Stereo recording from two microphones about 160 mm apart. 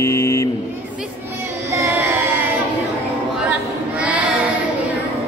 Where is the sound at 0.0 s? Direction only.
15° left (ahead or behind).